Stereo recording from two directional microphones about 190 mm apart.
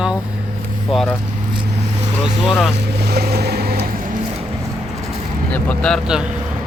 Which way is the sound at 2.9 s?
60° right (ahead or behind).